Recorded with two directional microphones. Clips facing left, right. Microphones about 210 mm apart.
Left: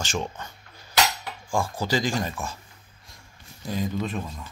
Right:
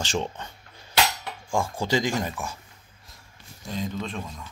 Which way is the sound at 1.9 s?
20° right (ahead or behind).